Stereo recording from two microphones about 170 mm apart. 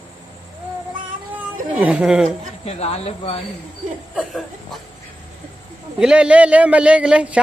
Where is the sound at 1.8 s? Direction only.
10° right (ahead or behind).